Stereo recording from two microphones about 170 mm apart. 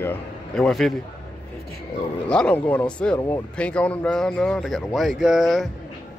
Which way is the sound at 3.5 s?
5° left (ahead or behind).